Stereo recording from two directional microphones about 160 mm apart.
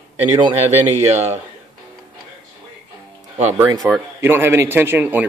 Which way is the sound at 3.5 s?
20° right (ahead or behind).